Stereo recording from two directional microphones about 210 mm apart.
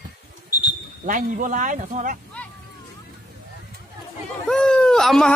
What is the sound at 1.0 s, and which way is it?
Speech, 40° right (ahead or behind).